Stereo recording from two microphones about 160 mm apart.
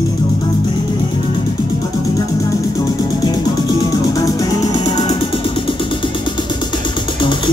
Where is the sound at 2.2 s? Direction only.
20° left (ahead or behind).